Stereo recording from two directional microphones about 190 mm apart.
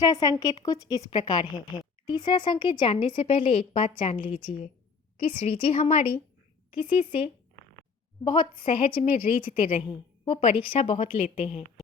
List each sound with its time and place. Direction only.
0.0 s a woman's voice: 20° left (ahead or behind)